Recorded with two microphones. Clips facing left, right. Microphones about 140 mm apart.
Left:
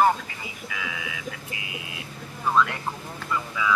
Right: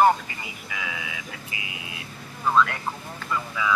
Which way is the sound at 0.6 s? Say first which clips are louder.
Even; centre (ahead or behind).